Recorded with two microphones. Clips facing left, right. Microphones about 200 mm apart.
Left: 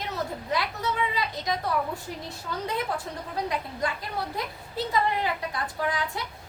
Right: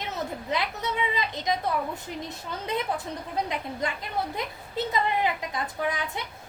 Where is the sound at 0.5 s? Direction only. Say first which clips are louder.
Left 1 dB; 20° right (ahead or behind).